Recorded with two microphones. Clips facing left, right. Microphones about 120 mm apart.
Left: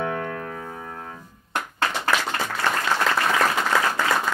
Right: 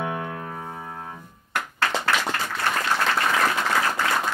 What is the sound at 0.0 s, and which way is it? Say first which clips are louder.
Piano: left 2 dB; 15° right (ahead or behind).